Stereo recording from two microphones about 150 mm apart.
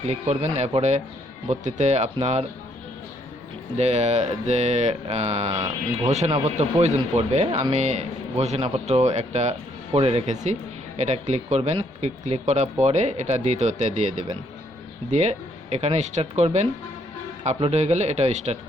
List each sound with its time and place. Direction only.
0.0 s a man's voice: 45° right (ahead or behind)
3.8 s a man's voice: 45° right (ahead or behind)